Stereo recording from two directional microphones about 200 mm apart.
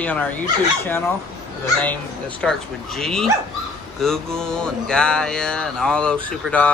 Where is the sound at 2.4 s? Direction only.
Centre (ahead or behind).